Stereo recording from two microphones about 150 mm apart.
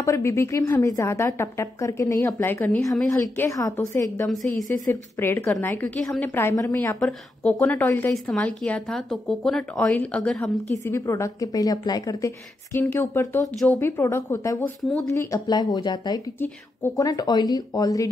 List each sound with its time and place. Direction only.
0.0 s a woman's voice: 20° left (ahead or behind)
4.3 s a woman's voice: centre (ahead or behind)
5.2 s a woman's voice: 15° left (ahead or behind)
11.0 s a woman's voice: 20° left (ahead or behind)
12.7 s a woman's voice: 15° left (ahead or behind)